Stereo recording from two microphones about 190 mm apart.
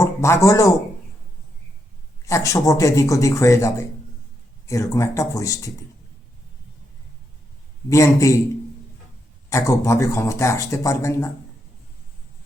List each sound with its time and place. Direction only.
0.0 s speech: 15° left (ahead or behind)
2.2 s speech: 15° left (ahead or behind)
7.9 s speech: 15° left (ahead or behind)
9.5 s speech: 15° left (ahead or behind)